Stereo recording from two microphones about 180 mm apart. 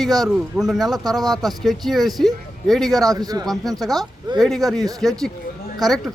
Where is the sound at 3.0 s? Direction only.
20° right (ahead or behind).